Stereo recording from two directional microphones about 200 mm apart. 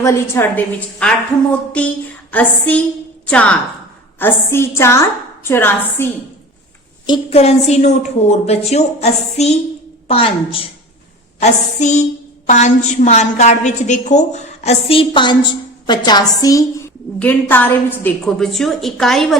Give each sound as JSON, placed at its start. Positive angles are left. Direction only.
{"t": 0.0, "sound": "a woman's voice", "side_deg": 15}
{"t": 7.1, "sound": "a woman's voice", "side_deg": 30}